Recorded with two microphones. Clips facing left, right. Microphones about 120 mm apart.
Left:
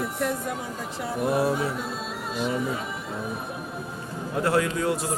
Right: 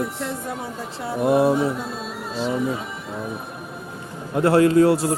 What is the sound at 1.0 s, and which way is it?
Speech, 25° right (ahead or behind).